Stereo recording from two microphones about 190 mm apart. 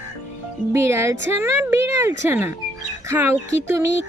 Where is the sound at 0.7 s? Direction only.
15° right (ahead or behind).